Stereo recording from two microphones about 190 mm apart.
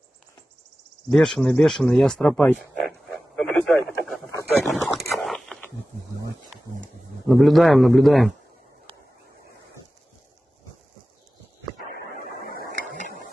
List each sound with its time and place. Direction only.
1.1 s speech: centre (ahead or behind)
3.3 s radio: 5° left (ahead or behind)
4.6 s a sound: centre (ahead or behind)
7.2 s speech: centre (ahead or behind)
12.0 s vehicle: 55° right (ahead or behind)
12.6 s printer: 50° left (ahead or behind)